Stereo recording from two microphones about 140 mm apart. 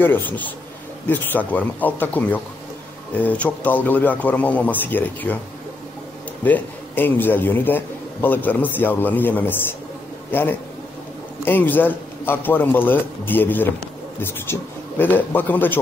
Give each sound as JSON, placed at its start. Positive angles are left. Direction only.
{"t": 0.0, "sound": "a man's voice", "side_deg": 15}
{"t": 6.4, "sound": "a man's voice", "side_deg": 10}